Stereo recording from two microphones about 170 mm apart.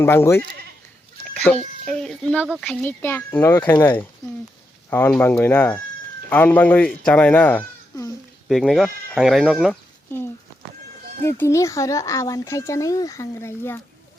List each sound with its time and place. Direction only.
0.0 s speech: 15° left (ahead or behind)
8.4 s speech: centre (ahead or behind)
11.2 s speech: 15° left (ahead or behind)